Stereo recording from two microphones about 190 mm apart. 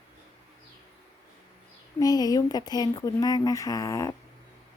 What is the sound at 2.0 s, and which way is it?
Speech, 20° left (ahead or behind).